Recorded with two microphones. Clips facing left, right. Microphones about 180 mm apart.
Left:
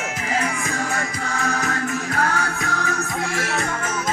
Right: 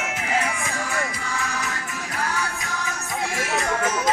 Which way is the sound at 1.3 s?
45° left (ahead or behind).